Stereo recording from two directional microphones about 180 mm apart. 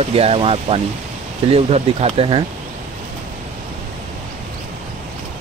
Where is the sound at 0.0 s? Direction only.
35° right (ahead or behind).